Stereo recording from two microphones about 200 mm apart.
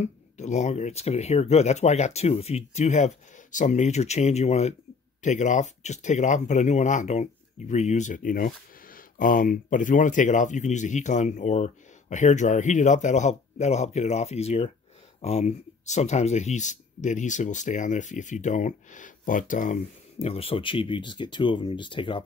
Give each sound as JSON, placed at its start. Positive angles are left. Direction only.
{"t": 0.0, "sound": "speech", "side_deg": 35}